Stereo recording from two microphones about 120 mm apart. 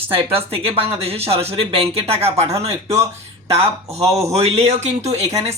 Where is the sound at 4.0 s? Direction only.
60° right (ahead or behind).